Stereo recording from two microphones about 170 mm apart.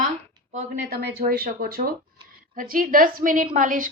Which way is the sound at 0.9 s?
65° right (ahead or behind).